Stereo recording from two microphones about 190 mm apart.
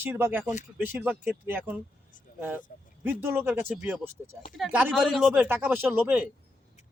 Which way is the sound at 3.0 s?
10° right (ahead or behind).